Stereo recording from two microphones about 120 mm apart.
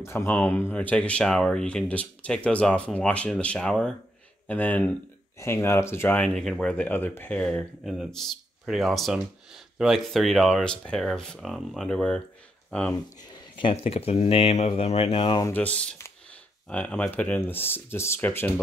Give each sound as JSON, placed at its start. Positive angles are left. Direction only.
{"t": 0.0, "sound": "speech", "side_deg": 20}
{"t": 6.2, "sound": "speech", "side_deg": 5}
{"t": 13.3, "sound": "speech", "side_deg": 45}
{"t": 15.1, "sound": "speech", "side_deg": 40}
{"t": 15.5, "sound": "speech", "side_deg": 10}